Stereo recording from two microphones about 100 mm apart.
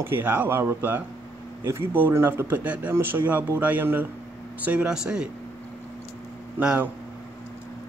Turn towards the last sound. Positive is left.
turn(degrees=-10)  # may be behind; listen again after turning